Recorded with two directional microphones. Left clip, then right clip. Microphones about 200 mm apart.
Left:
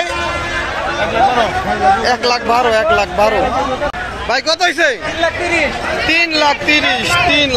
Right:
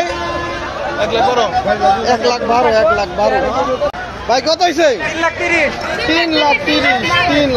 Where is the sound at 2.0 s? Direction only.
5° left (ahead or behind).